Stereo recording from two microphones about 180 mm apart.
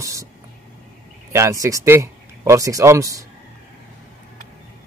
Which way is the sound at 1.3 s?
15° right (ahead or behind).